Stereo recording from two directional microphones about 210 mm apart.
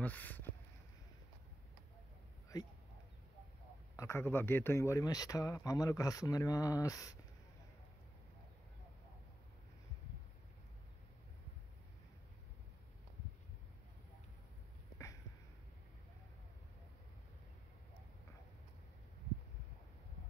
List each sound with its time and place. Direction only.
0.0 s a sound: 5° left (ahead or behind)
2.5 s speech: 20° left (ahead or behind)
3.9 s speech: 15° left (ahead or behind)